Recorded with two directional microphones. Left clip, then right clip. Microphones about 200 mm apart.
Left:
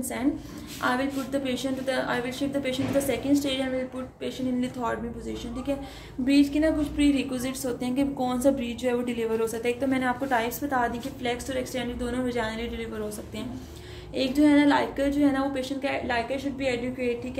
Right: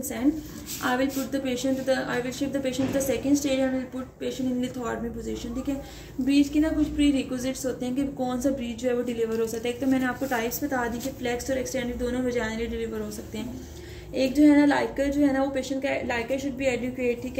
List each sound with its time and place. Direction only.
0.8 s a woman's voice: 25° left (ahead or behind)
6.2 s a woman's voice: 35° left (ahead or behind)
14.1 s a woman's voice: 25° left (ahead or behind)